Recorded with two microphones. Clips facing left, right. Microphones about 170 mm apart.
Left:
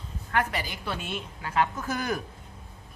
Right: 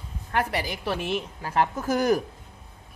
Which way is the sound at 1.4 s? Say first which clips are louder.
Right 2 dB; 40° right (ahead or behind).